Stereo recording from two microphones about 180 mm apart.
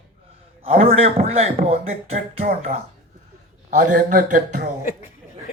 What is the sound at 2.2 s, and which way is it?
Speech, 55° right (ahead or behind).